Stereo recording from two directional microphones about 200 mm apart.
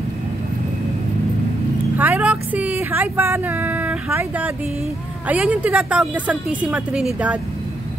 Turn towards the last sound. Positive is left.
turn(degrees=-5)  # may be behind; listen again after turning